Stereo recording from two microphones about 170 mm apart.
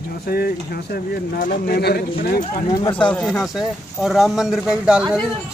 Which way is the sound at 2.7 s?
20° left (ahead or behind).